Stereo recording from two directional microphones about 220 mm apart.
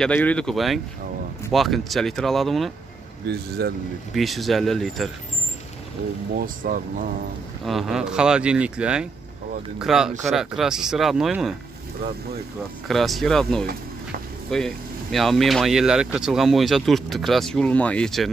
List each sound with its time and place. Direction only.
0.0 s speech: 5° left (ahead or behind)
3.3 s speech: 45° right (ahead or behind)
4.1 s speech: centre (ahead or behind)
6.3 s speech: 40° right (ahead or behind)
7.6 s speech: centre (ahead or behind)
12.8 s speech: centre (ahead or behind)